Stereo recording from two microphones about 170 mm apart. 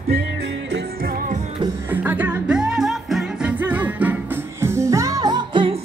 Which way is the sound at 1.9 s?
10° right (ahead or behind).